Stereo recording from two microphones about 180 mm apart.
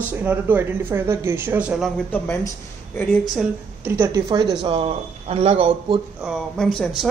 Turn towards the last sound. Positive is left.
turn(degrees=0)  # may be behind; listen again after turning